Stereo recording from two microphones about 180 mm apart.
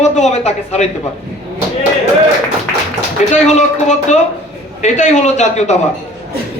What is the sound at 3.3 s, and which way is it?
A man's voice, 40° left (ahead or behind).